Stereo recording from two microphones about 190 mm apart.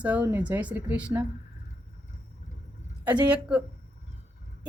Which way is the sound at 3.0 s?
5° right (ahead or behind).